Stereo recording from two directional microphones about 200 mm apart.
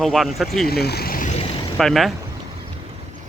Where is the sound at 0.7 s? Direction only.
50° left (ahead or behind).